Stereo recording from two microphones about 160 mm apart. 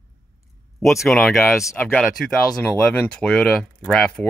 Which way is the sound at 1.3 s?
15° left (ahead or behind).